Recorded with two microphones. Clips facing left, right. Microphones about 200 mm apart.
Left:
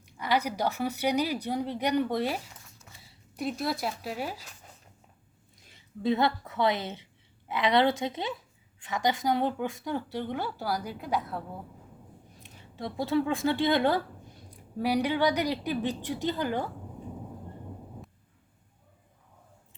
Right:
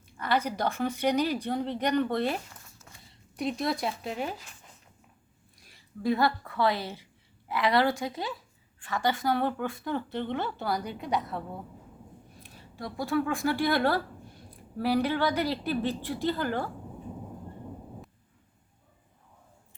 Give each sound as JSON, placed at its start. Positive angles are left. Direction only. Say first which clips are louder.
{"t": 0.2, "sound": "speech", "louder": "even", "side_deg": 10}
{"t": 5.6, "sound": "a woman's voice", "louder": "even", "side_deg": 20}
{"t": 12.4, "sound": "speech", "louder": "left 2 dB", "side_deg": 20}